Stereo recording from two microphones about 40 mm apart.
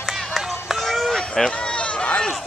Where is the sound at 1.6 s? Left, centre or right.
Left.